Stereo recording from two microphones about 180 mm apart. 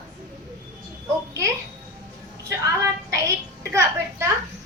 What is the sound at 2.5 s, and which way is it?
Speech, 15° right (ahead or behind).